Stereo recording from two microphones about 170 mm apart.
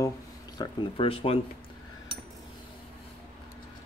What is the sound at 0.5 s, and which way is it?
Speech, 35° left (ahead or behind).